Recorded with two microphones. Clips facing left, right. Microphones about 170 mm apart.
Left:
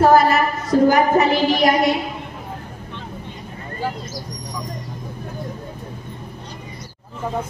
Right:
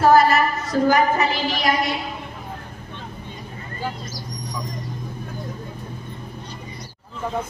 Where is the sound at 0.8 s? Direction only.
60° left (ahead or behind).